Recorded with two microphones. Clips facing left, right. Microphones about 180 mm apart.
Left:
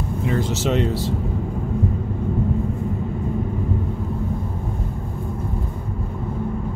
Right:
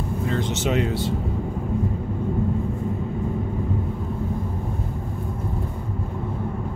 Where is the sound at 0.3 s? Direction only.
5° left (ahead or behind).